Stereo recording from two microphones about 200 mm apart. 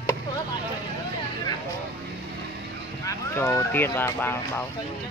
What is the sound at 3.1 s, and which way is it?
Speech, 15° left (ahead or behind).